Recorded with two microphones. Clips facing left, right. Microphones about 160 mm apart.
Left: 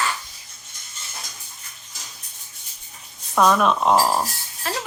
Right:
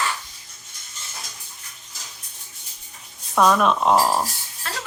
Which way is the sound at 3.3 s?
Centre (ahead or behind).